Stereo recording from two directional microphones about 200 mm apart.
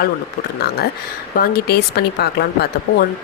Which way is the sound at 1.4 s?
50° left (ahead or behind).